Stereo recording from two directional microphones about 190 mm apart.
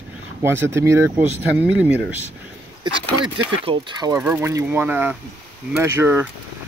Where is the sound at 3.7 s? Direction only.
25° right (ahead or behind).